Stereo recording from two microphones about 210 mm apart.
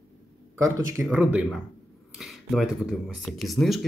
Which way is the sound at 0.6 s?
15° right (ahead or behind).